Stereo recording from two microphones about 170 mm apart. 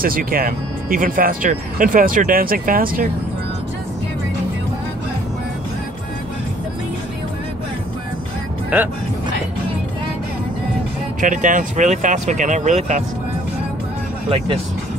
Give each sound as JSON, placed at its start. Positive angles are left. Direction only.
{"t": 0.0, "sound": "speech", "side_deg": -55}
{"t": 8.7, "sound": "speech", "side_deg": -10}
{"t": 11.1, "sound": "speech", "side_deg": -50}